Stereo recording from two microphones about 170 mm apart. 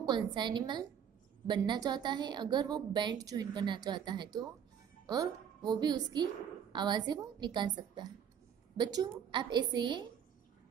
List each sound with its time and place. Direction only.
0.0 s a woman's voice: 25° right (ahead or behind)
8.7 s a woman's voice: 25° right (ahead or behind)